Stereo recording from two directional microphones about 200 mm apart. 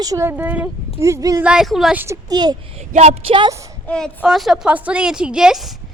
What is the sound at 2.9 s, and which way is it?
Speech, 30° right (ahead or behind).